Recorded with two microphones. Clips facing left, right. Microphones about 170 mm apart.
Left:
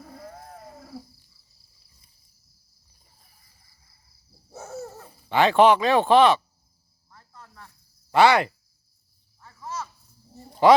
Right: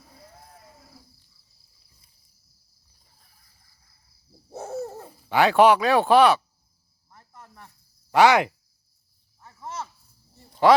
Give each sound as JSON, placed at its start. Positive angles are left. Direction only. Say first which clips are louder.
{"t": 0.0, "sound": "a sound", "louder": "left 9 dB", "side_deg": 65}
{"t": 4.5, "sound": "owl", "louder": "right 5 dB", "side_deg": -35}
{"t": 4.9, "sound": "speech", "louder": "even", "side_deg": -10}
{"t": 7.1, "sound": "cricket", "louder": "right 1 dB", "side_deg": -20}
{"t": 8.1, "sound": "speech", "louder": "right 1 dB", "side_deg": -15}
{"t": 9.4, "sound": "cricket", "louder": "left 1 dB", "side_deg": -20}
{"t": 10.5, "sound": "a sound", "louder": "left 1 dB", "side_deg": 0}